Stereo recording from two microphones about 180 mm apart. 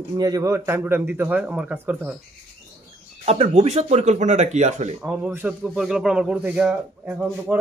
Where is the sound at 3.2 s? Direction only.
35° right (ahead or behind).